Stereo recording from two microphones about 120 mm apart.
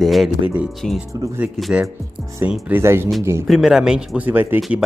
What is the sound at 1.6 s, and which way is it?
Speech, centre (ahead or behind).